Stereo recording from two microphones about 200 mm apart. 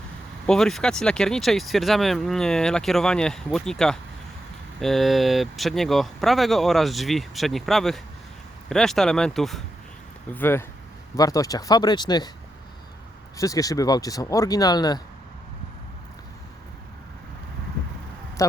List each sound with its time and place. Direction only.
0.4 s speech: 5° left (ahead or behind); by 12.3 s 20° left (ahead or behind)
13.3 s speech: 15° left (ahead or behind)
18.4 s a sound: 15° left (ahead or behind)